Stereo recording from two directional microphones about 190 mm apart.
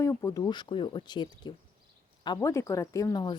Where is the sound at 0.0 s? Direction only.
15° left (ahead or behind).